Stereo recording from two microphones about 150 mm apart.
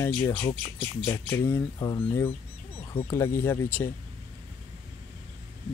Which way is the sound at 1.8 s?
25° left (ahead or behind).